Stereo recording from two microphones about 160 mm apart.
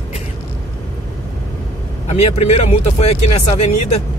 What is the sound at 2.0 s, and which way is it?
Speech, 40° left (ahead or behind).